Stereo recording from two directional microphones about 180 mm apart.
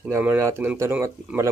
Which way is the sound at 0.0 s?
10° right (ahead or behind).